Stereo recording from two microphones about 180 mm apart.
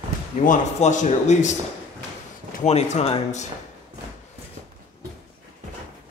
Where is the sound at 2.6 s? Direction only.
40° left (ahead or behind).